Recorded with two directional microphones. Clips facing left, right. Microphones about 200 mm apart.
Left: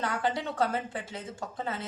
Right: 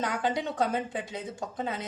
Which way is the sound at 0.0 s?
15° right (ahead or behind).